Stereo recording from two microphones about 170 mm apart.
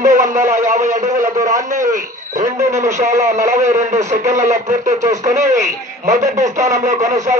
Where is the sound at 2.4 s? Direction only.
20° right (ahead or behind).